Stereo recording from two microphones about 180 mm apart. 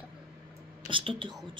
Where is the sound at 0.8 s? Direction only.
30° right (ahead or behind).